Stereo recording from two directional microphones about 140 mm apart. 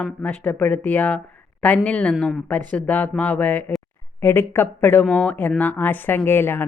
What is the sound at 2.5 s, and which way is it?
Speech, 10° left (ahead or behind).